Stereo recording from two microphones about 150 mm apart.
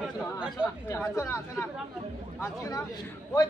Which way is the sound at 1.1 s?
20° left (ahead or behind).